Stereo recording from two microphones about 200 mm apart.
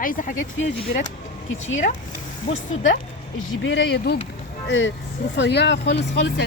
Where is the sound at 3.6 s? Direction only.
60° left (ahead or behind).